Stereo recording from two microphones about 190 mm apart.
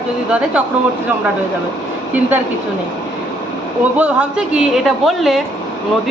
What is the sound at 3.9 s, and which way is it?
A woman's voice, 5° right (ahead or behind).